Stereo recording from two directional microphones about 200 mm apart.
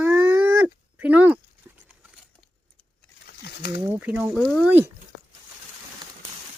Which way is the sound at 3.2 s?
55° left (ahead or behind).